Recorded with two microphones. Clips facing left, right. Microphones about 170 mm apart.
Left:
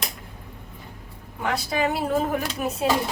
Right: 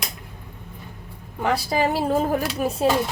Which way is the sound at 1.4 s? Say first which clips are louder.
Right 3 dB; 30° right (ahead or behind).